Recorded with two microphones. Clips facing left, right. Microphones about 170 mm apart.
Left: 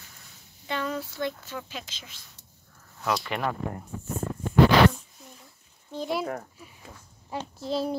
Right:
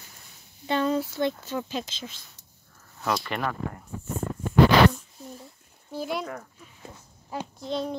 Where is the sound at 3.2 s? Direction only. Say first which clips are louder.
Even; 10° left (ahead or behind).